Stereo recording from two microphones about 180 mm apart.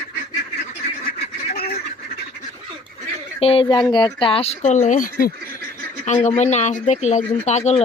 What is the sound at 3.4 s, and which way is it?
Speech, 30° left (ahead or behind).